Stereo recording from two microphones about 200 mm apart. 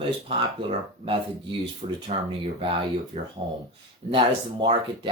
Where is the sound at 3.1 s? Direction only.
30° right (ahead or behind).